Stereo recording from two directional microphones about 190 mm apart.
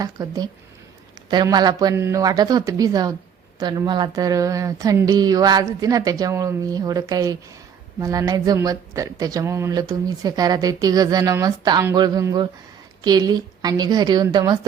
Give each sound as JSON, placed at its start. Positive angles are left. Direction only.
{"t": 0.0, "sound": "speech", "side_deg": -20}